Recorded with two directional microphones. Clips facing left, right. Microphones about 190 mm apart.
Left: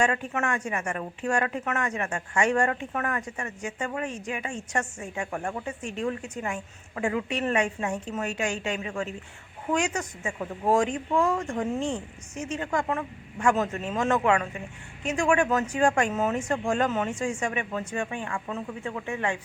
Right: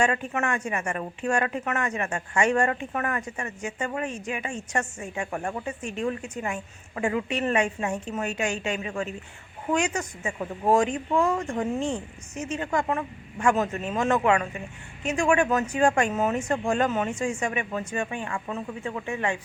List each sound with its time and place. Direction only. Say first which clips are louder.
0.0 s speech: right 1 dB; 20° right (ahead or behind)